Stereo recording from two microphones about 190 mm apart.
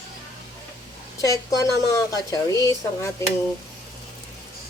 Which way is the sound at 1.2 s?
20° left (ahead or behind).